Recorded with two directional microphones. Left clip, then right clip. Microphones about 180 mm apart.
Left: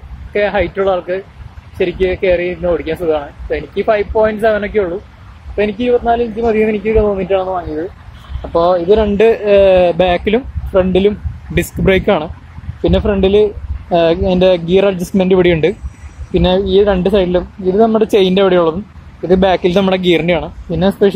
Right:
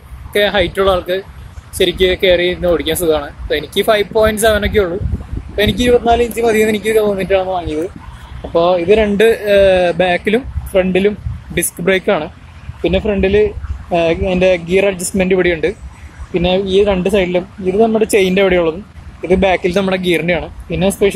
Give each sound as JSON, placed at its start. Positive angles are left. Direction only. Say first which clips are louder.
{"t": 0.3, "sound": "speech", "louder": "right 1 dB", "side_deg": 0}
{"t": 8.5, "sound": "speech", "louder": "even", "side_deg": 25}